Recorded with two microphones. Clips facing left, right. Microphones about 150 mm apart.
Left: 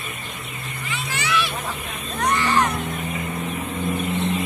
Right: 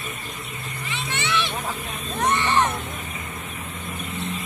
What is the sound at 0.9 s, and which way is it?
Vehicle, 25° right (ahead or behind).